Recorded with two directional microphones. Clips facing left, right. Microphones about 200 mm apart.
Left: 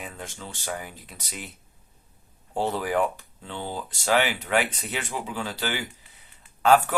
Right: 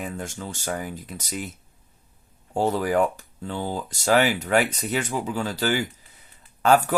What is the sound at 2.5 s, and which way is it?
Speech, 45° right (ahead or behind).